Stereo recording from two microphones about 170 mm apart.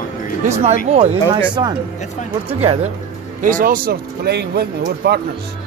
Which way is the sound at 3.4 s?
50° right (ahead or behind).